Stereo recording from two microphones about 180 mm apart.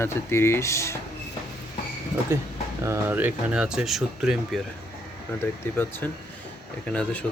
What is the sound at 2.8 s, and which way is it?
Speech, 15° right (ahead or behind).